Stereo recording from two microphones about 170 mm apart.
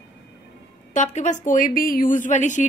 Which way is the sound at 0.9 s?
45° left (ahead or behind).